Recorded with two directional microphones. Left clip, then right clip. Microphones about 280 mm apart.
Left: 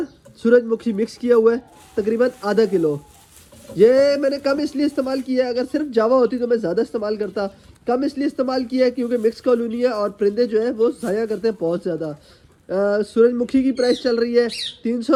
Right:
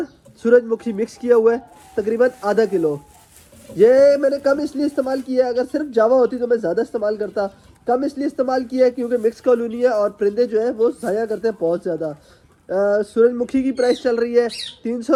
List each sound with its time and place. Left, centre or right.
0.4 s speech: centre
3.8 s speech: centre